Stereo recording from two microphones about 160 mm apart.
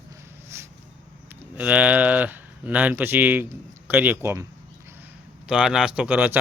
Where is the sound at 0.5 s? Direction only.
15° right (ahead or behind).